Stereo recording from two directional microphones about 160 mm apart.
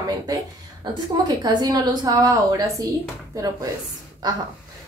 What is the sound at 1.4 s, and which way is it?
A woman's voice, 25° right (ahead or behind).